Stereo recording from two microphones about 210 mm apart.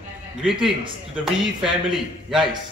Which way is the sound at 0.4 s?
5° right (ahead or behind).